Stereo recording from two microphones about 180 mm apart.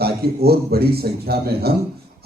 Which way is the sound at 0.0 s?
60° right (ahead or behind).